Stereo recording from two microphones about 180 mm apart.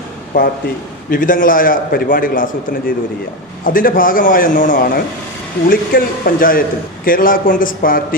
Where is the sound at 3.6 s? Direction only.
50° left (ahead or behind).